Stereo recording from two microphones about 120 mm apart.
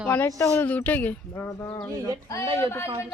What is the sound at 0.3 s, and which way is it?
Speech, 30° left (ahead or behind).